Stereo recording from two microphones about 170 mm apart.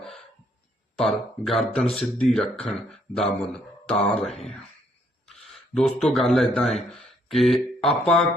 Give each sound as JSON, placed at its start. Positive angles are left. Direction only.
{"t": 1.0, "sound": "speech", "side_deg": 0}
{"t": 5.3, "sound": "speech", "side_deg": 0}